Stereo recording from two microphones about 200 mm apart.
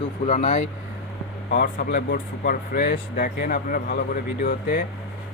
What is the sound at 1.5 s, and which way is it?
Speech, 50° left (ahead or behind).